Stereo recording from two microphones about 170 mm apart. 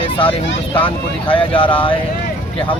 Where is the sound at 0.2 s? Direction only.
30° left (ahead or behind).